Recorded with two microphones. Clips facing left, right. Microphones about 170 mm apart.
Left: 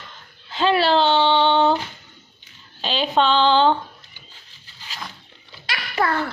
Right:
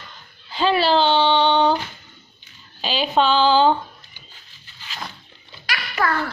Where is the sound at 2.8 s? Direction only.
5° right (ahead or behind).